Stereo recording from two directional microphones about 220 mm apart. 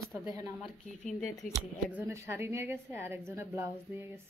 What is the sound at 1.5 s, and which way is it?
A woman's voice, 5° right (ahead or behind).